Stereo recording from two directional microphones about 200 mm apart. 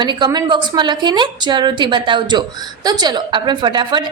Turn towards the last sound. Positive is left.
turn(degrees=-20)  # may be behind; listen again after turning